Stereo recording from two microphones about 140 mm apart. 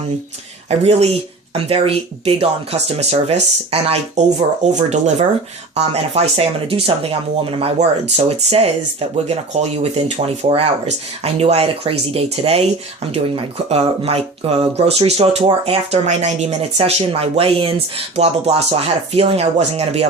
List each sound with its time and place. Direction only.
0.7 s speech: 45° right (ahead or behind)
4.6 s speech: 55° right (ahead or behind)